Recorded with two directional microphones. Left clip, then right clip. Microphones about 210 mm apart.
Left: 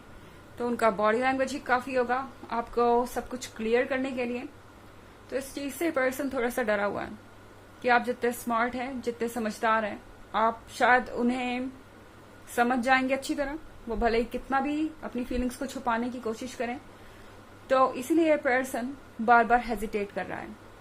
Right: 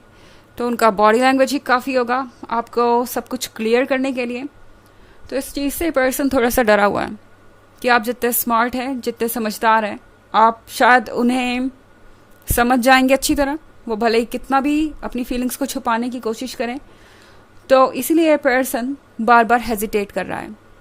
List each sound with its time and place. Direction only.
0.5 s a woman's voice: 45° right (ahead or behind)